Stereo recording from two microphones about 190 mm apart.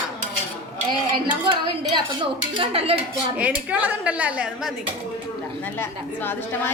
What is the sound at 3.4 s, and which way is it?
A woman's voice, 10° right (ahead or behind).